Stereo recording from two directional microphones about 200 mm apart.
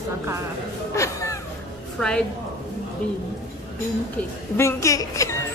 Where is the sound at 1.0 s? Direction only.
15° left (ahead or behind).